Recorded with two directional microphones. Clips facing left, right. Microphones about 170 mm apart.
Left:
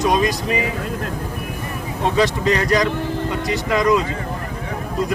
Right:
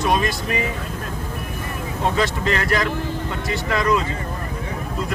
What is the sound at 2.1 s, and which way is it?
Speech, 15° left (ahead or behind).